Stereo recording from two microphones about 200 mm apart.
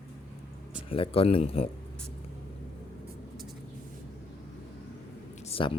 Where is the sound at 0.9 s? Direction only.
30° left (ahead or behind).